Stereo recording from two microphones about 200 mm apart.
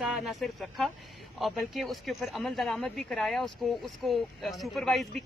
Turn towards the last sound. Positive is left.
turn(degrees=0)  # may be behind; listen again after turning